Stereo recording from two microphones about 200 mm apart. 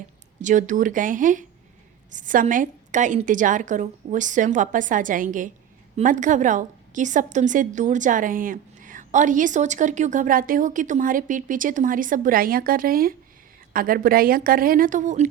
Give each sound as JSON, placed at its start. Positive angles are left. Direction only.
{"t": 0.4, "sound": "a woman's voice", "side_deg": -40}